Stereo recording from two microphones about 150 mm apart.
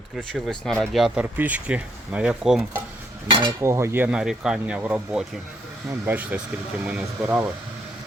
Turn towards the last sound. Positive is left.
turn(degrees=-5)  # may be behind; listen again after turning